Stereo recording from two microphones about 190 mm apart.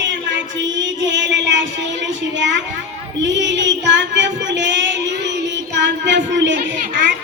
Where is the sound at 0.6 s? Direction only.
75° right (ahead or behind).